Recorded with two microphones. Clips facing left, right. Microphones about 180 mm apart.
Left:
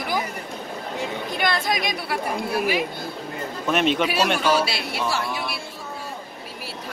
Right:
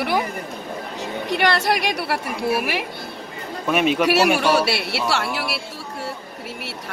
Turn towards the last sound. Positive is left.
turn(degrees=-80)